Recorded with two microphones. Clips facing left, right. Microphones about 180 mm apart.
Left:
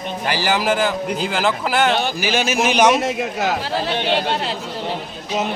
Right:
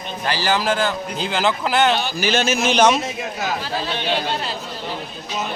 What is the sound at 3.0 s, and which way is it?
Speech, 80° left.